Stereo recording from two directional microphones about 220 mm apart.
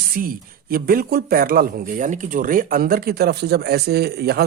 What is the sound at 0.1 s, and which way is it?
Speech, 40° right (ahead or behind).